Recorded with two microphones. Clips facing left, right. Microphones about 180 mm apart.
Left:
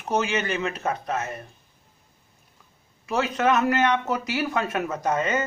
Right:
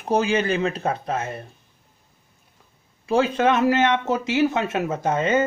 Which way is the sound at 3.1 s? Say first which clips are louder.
Right 4 dB; 30° right (ahead or behind).